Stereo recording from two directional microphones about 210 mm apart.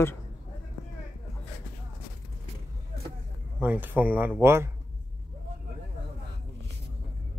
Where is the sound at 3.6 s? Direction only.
10° right (ahead or behind).